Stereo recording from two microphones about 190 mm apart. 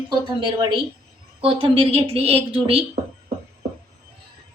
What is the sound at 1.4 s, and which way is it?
A woman's voice, 30° right (ahead or behind).